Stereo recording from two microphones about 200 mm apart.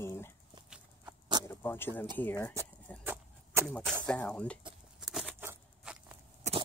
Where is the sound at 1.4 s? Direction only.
10° left (ahead or behind).